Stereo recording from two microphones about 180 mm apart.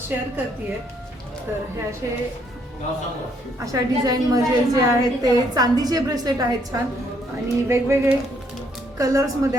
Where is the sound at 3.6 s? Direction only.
20° right (ahead or behind).